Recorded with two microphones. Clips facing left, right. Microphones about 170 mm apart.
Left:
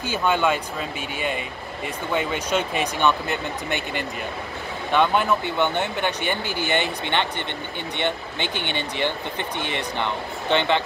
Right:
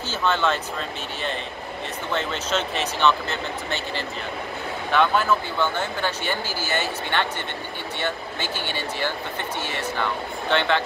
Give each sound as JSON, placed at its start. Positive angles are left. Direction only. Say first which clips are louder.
{"t": 0.1, "sound": "speech", "louder": "left 2 dB", "side_deg": 10}
{"t": 6.2, "sound": "speech", "louder": "left 2 dB", "side_deg": 60}
{"t": 8.4, "sound": "speech", "louder": "left 2 dB", "side_deg": 60}
{"t": 10.5, "sound": "speech", "louder": "left 1 dB", "side_deg": 15}